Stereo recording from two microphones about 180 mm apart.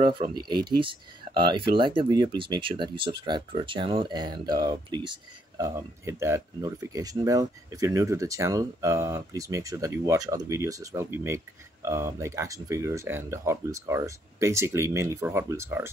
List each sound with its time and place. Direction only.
0.3 s speech: 25° right (ahead or behind)
5.8 s speech: 15° right (ahead or behind)